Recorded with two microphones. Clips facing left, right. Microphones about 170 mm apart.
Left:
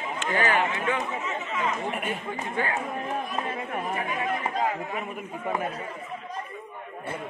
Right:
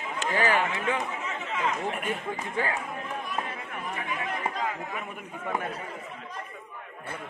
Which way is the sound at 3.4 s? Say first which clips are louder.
Left 6 dB; 40° left (ahead or behind).